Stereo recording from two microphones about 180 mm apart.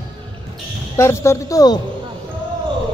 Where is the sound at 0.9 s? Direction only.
15° left (ahead or behind).